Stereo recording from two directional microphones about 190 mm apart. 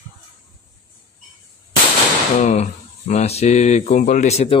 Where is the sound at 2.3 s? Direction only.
35° left (ahead or behind).